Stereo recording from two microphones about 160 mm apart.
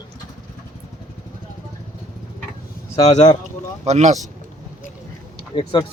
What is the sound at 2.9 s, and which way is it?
Speech, 45° left (ahead or behind).